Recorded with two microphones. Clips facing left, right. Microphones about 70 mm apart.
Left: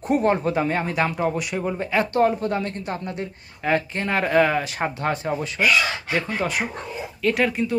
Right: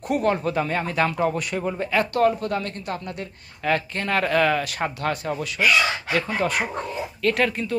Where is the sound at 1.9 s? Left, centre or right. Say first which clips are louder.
Even; left.